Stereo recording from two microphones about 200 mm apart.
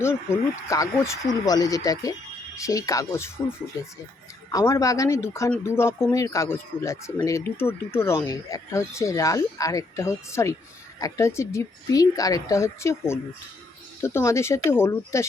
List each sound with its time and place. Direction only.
0.0 s speech: 10° left (ahead or behind)